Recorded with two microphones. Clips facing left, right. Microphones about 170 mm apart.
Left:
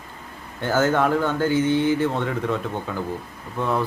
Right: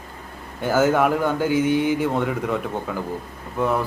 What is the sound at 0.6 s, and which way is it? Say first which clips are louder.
Speech: right 2 dB; 10° right (ahead or behind).